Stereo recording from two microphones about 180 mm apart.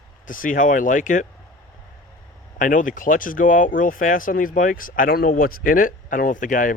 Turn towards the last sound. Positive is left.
turn(degrees=50)  # may be behind; listen again after turning